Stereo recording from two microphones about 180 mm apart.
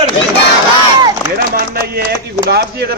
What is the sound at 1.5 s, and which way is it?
Speech, 60° right (ahead or behind).